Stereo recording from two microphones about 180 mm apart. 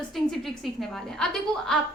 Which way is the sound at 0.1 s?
Centre (ahead or behind).